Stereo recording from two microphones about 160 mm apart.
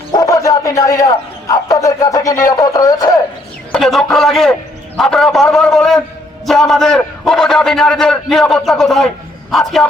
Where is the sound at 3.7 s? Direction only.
Centre (ahead or behind).